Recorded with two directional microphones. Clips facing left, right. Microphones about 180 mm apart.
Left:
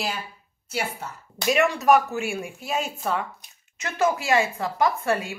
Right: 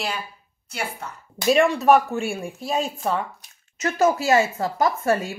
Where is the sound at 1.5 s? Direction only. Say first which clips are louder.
Right 3 dB; 30° right (ahead or behind).